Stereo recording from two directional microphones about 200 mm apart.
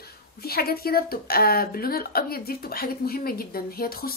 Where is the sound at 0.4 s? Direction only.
50° left (ahead or behind).